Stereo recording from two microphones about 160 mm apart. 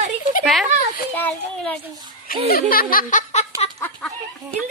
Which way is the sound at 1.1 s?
10° left (ahead or behind).